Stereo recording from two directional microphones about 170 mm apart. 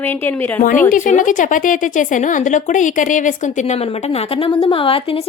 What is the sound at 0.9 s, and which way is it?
A woman's voice, 50° left (ahead or behind).